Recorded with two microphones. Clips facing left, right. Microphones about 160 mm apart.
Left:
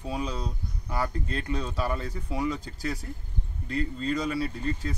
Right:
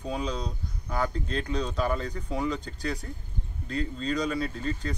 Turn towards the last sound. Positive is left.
turn(degrees=5)  # may be behind; listen again after turning